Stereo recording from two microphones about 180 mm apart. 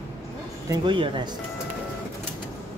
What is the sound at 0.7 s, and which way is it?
Speech, 25° right (ahead or behind).